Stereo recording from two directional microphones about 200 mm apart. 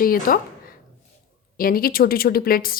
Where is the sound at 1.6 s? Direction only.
45° left (ahead or behind).